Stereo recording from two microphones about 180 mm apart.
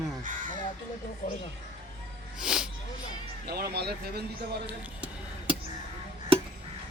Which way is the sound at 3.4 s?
60° right (ahead or behind).